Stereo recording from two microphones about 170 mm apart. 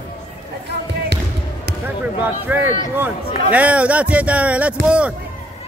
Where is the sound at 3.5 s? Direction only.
10° right (ahead or behind).